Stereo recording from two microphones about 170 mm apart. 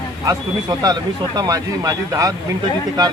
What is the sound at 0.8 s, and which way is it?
Speech, 20° right (ahead or behind).